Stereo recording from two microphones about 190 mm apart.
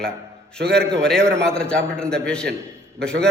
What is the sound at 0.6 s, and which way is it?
Speech, 60° right (ahead or behind).